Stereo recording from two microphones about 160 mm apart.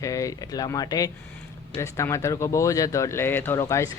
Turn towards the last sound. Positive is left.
turn(degrees=20)  # may be behind; listen again after turning